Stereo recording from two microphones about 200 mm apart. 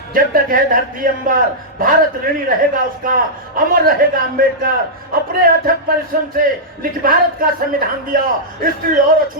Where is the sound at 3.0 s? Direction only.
45° right (ahead or behind).